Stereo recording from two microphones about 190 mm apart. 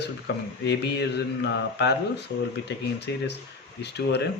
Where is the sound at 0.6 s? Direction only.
65° left (ahead or behind).